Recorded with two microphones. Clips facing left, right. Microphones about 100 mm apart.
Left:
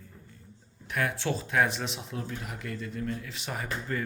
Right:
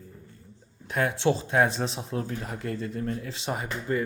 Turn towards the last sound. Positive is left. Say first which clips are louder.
# right 4 dB
turn(degrees=-20)  # may be behind; listen again after turning